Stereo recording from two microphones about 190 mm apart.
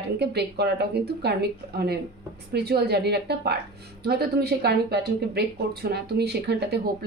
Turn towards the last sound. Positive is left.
turn(degrees=-60)  # may be behind; listen again after turning